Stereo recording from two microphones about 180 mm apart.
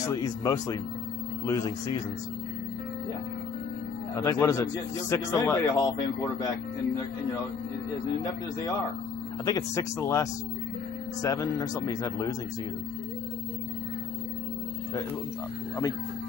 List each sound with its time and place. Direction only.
0.1 s speech: 20° left (ahead or behind)
4.1 s speech: 15° left (ahead or behind)
9.4 s speech: 20° left (ahead or behind)
11.2 s speech: 20° left (ahead or behind)